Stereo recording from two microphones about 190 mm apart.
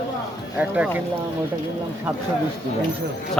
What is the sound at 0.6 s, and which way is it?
Speech, 5° right (ahead or behind).